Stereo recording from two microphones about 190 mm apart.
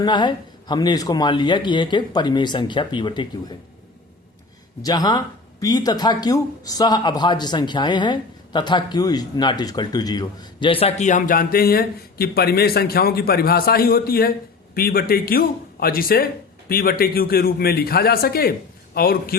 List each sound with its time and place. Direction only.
0.0 s speech: 25° left (ahead or behind)
4.8 s a man's voice: 20° left (ahead or behind); by 19.4 s 50° left (ahead or behind)